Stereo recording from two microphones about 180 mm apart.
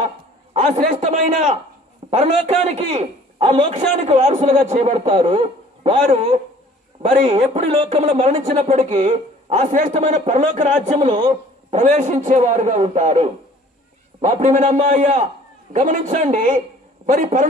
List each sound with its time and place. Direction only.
0.5 s a man's voice: 40° right (ahead or behind)